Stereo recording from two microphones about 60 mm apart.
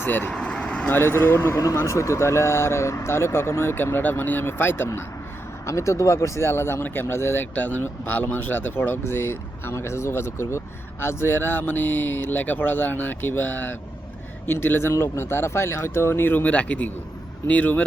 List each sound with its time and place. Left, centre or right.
0.0 s speech: left
0.3 s vehicle: centre
0.9 s speech: left
1.7 s speech: left
5.6 s speech: left
7.5 s speech: left